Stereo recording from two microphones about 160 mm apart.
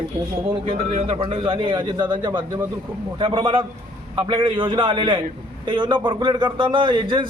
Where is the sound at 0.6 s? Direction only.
40° right (ahead or behind).